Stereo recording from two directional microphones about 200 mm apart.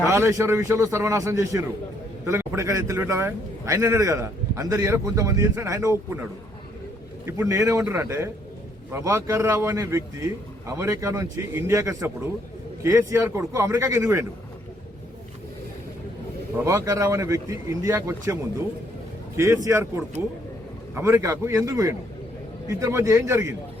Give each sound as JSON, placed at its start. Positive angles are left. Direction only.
{"t": 0.1, "sound": "a man's voice", "side_deg": -15}
{"t": 7.3, "sound": "a man's voice", "side_deg": -15}
{"t": 16.6, "sound": "a man's voice", "side_deg": -15}
{"t": 19.4, "sound": "a man's voice", "side_deg": -15}